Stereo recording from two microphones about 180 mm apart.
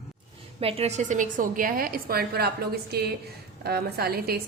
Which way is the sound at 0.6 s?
35° right (ahead or behind).